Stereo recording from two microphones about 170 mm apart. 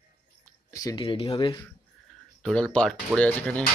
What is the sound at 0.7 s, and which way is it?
Speech, 20° left (ahead or behind).